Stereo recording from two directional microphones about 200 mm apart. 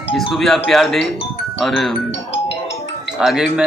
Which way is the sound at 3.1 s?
5° right (ahead or behind).